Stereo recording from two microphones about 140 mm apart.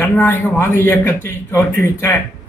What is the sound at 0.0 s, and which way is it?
Speech, 15° left (ahead or behind).